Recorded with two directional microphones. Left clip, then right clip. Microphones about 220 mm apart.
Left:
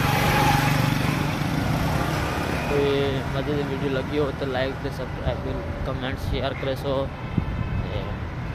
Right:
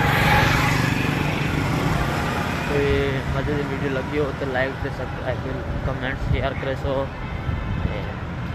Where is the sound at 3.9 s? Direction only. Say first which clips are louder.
Even; 10° left (ahead or behind).